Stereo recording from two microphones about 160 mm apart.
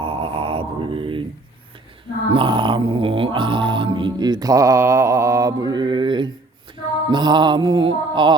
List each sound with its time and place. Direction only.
0.0 s mantra: 35° right (ahead or behind)
2.3 s music: 30° right (ahead or behind)